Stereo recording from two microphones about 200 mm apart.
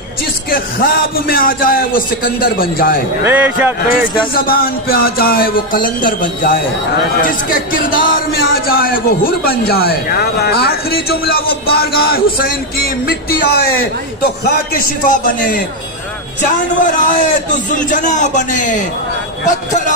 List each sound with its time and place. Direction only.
0.5 s a man's voice: 45° left (ahead or behind)
3.3 s speech: 10° right (ahead or behind)
4.0 s a man's voice: 45° left (ahead or behind)